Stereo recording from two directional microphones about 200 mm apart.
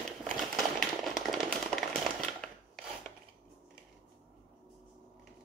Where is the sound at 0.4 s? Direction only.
Centre (ahead or behind).